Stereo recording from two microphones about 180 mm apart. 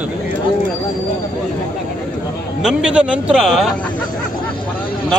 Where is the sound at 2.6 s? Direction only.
5° right (ahead or behind).